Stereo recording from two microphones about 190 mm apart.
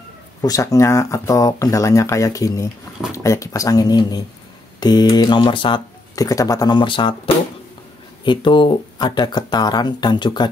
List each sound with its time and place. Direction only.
0.4 s speech: 20° left (ahead or behind)